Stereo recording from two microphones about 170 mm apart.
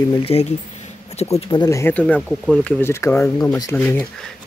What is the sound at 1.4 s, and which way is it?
Speech, 25° left (ahead or behind).